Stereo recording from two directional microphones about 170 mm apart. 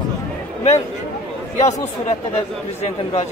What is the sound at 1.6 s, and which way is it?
Speech, 45° left (ahead or behind).